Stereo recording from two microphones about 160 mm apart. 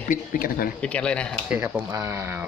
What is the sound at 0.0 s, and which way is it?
Speech, 60° left (ahead or behind).